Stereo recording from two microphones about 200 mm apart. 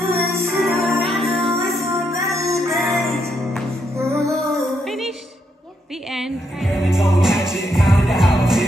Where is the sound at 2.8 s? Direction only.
Centre (ahead or behind).